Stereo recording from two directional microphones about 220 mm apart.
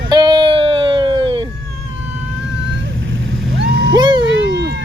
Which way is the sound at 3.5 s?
50° right (ahead or behind).